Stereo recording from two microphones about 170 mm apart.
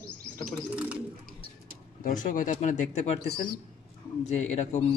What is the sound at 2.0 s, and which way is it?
Speech, 50° left (ahead or behind).